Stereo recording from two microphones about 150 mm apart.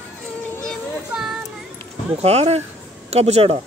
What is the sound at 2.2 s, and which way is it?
Speech, 45° right (ahead or behind).